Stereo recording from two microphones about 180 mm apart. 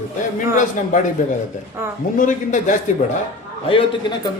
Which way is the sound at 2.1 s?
45° left (ahead or behind).